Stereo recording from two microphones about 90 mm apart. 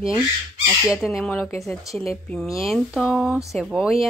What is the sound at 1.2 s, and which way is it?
Speech, 10° left (ahead or behind).